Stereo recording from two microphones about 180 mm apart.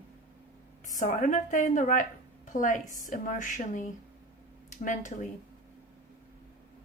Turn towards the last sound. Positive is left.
turn(degrees=45)  # may be behind; listen again after turning